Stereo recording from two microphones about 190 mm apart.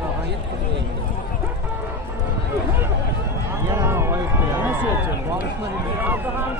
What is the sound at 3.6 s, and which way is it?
Run, 15° right (ahead or behind).